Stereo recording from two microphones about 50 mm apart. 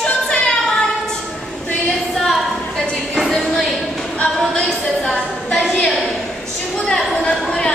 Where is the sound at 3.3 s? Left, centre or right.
Centre.